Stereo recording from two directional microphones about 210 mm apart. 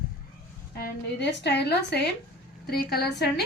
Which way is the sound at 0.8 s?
55° left (ahead or behind).